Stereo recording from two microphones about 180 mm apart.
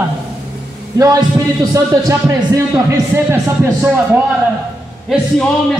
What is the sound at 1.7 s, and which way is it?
Speech, 15° right (ahead or behind).